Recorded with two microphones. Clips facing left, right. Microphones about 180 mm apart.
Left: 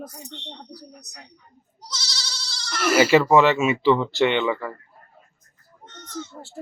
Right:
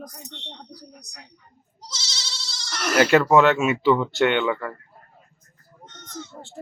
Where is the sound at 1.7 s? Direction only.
25° right (ahead or behind).